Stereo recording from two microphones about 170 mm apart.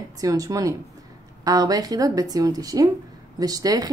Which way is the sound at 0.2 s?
20° right (ahead or behind).